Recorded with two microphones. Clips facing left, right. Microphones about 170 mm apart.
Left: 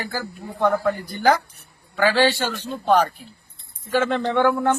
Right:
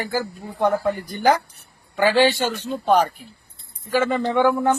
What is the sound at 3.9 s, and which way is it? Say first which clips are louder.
Speech: right 1 dB; 5° right (ahead or behind).